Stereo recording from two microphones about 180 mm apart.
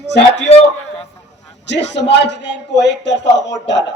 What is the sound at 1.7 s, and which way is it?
A man's voice, 75° left (ahead or behind).